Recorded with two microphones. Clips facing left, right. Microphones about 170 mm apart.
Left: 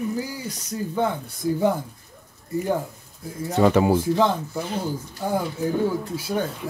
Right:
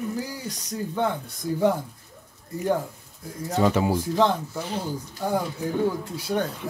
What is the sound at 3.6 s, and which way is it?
Speech, 60° left (ahead or behind).